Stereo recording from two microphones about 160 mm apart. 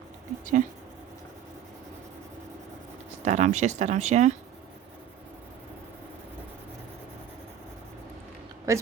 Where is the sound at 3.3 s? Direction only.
45° right (ahead or behind).